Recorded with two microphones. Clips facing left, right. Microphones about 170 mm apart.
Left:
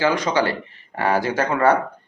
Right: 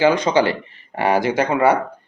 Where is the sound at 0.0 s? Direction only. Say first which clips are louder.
Right 4 dB; 20° right (ahead or behind).